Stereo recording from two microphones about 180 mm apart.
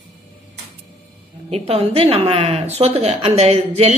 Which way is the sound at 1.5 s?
35° right (ahead or behind).